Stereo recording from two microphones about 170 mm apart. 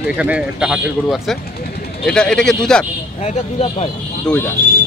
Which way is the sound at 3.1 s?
40° left (ahead or behind).